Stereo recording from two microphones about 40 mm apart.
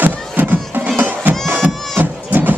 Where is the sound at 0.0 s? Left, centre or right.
Right.